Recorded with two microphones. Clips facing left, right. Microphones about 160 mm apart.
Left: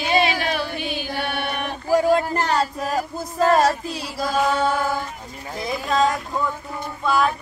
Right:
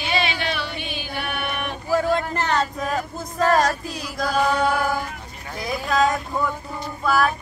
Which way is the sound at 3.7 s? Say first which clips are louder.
Left 2 dB; 30° left (ahead or behind).